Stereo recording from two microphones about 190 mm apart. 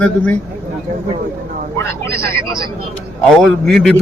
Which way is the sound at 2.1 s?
15° left (ahead or behind).